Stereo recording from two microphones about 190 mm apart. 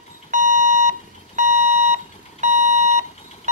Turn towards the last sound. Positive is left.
turn(degrees=-40)  # may be behind; listen again after turning